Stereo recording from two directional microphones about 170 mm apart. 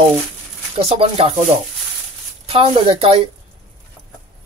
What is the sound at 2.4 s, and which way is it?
Speech, 30° right (ahead or behind).